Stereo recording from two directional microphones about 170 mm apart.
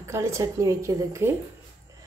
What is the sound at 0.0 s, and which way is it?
A woman's voice, 15° right (ahead or behind).